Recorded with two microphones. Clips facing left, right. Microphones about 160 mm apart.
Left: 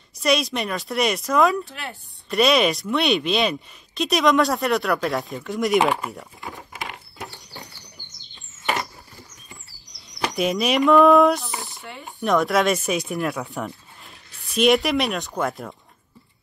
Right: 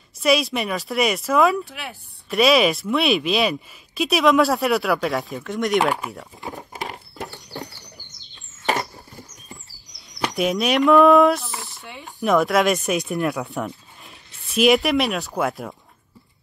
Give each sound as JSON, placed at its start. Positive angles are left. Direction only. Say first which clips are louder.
{"t": 0.2, "sound": "speech", "louder": "right 2 dB", "side_deg": 0}
{"t": 6.7, "sound": "patter", "louder": "right 3 dB", "side_deg": -40}
{"t": 9.9, "sound": "speech", "louder": "right 1 dB", "side_deg": 0}